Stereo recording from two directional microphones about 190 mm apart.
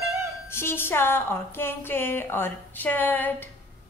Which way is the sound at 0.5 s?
10° left (ahead or behind).